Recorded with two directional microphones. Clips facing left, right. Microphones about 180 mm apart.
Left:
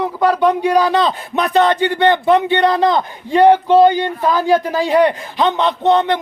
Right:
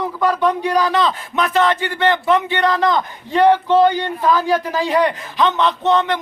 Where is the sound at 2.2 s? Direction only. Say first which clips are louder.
Left 4 dB; 30° left (ahead or behind).